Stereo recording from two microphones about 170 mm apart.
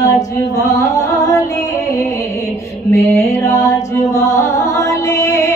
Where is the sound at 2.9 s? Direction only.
15° left (ahead or behind).